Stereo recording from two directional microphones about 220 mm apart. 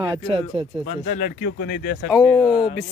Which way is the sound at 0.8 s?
35° left (ahead or behind).